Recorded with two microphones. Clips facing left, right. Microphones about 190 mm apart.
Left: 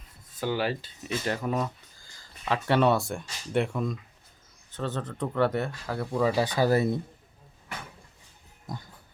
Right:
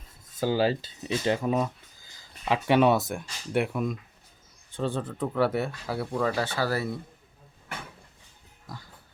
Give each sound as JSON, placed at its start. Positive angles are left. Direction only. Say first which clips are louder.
{"t": 0.3, "sound": "speech", "louder": "right 4 dB", "side_deg": -30}
{"t": 6.1, "sound": "speech", "louder": "left 4 dB", "side_deg": 10}